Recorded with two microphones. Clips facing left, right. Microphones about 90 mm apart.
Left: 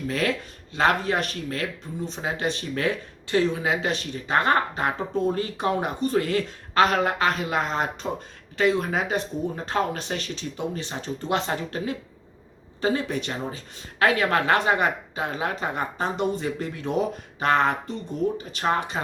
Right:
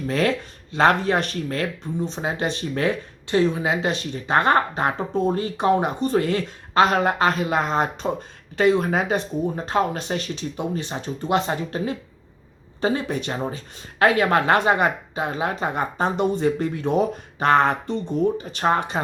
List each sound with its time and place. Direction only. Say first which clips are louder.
0.1 s speech: right 5 dB; 30° right (ahead or behind)
2.0 s speech: even; 25° right (ahead or behind)